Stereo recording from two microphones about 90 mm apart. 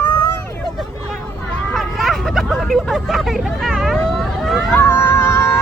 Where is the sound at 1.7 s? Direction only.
Centre (ahead or behind).